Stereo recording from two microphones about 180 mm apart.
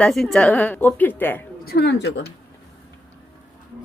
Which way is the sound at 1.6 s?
65° left (ahead or behind).